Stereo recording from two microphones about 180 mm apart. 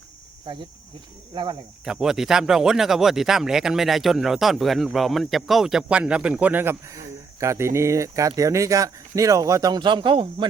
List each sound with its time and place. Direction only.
0.5 s speech: 30° right (ahead or behind)
1.8 s speech: 5° right (ahead or behind); by 10.5 s 25° right (ahead or behind)